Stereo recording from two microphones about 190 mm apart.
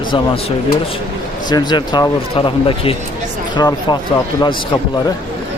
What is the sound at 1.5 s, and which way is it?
Speech, 20° left (ahead or behind).